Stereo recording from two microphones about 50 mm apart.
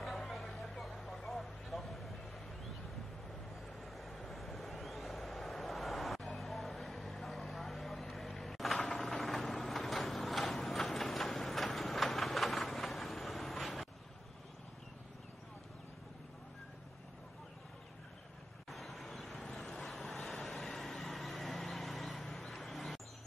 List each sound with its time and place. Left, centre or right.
0.0 s vehicle: centre
3.8 s vehicle: centre
8.7 s a sound: centre
9.3 s vehicle: centre
9.8 s printer: centre
10.8 s train: centre
18.7 s vehicle: centre
22.5 s a sound: centre